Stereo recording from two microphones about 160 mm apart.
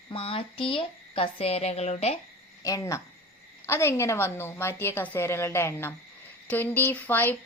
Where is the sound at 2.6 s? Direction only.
20° left (ahead or behind).